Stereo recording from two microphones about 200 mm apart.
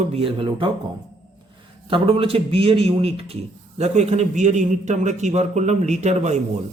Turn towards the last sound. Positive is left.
turn(degrees=-35)  # may be behind; listen again after turning